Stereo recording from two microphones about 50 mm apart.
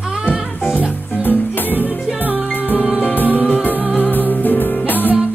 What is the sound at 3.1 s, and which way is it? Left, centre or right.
Music, left.